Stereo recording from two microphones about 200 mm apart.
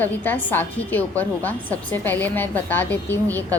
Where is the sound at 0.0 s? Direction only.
10° left (ahead or behind).